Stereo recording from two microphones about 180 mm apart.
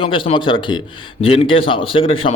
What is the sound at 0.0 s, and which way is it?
Speech, 30° left (ahead or behind).